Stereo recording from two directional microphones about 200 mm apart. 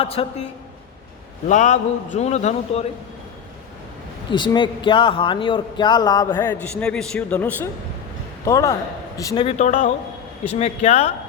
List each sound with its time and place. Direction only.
0.0 s a man's voice: 30° left (ahead or behind)
1.5 s speech: 35° left (ahead or behind)
4.3 s a man's voice: 25° left (ahead or behind)
6.3 s a man's voice: 10° left (ahead or behind); by 11.1 s 30° left (ahead or behind)